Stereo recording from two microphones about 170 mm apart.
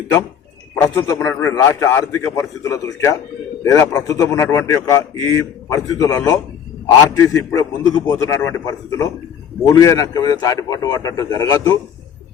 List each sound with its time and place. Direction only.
0.9 s a man's voice: 20° left (ahead or behind)